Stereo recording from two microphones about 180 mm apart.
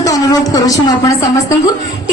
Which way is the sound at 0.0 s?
20° left (ahead or behind).